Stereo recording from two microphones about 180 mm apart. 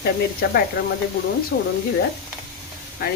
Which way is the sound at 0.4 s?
60° left (ahead or behind).